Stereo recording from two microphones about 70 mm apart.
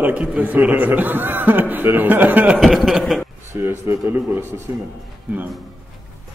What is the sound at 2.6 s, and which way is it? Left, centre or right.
Speech, centre.